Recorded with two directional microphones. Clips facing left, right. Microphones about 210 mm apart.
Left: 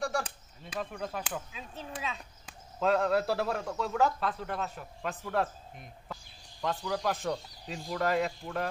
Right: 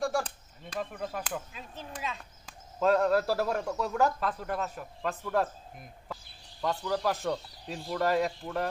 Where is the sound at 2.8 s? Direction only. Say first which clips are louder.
Right 2 dB; centre (ahead or behind).